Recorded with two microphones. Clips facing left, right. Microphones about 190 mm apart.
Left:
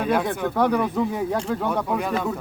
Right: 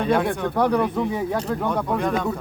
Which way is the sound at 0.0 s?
5° left (ahead or behind).